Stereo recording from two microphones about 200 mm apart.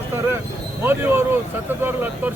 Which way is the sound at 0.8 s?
10° right (ahead or behind).